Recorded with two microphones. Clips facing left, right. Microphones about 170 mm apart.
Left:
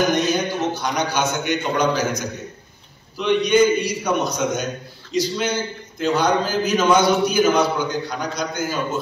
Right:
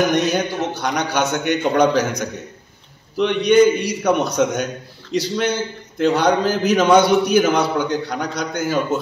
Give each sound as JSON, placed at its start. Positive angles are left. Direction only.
{"t": 0.3, "sound": "a man's voice", "side_deg": -60}